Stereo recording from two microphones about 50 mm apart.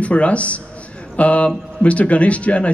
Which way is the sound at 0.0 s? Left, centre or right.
Left.